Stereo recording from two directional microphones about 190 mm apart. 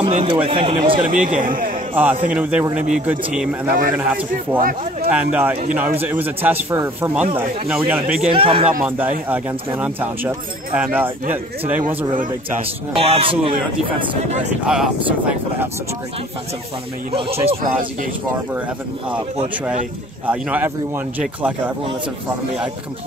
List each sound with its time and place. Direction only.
0.1 s speech: 30° right (ahead or behind)
1.1 s a man's voice: 45° right (ahead or behind)
2.0 s a man's voice: 10° right (ahead or behind)
3.6 s a man's voice: 50° right (ahead or behind)
3.9 s a man's voice: 5° right (ahead or behind)
8.3 s speech: 30° right (ahead or behind)
8.8 s a man's voice: 10° right (ahead or behind)
12.9 s a man's voice: 30° right (ahead or behind)
14.7 s speech: 5° right (ahead or behind)
17.1 s a man's voice: 30° right (ahead or behind)
20.2 s a man's voice: 10° right (ahead or behind)